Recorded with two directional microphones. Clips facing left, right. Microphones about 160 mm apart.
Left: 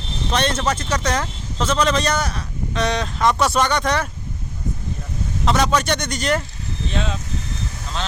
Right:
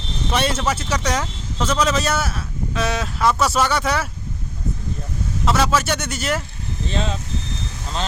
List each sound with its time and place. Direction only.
0.3 s speech: 10° right (ahead or behind)
5.5 s speech: 5° right (ahead or behind)
6.9 s speech: 35° right (ahead or behind)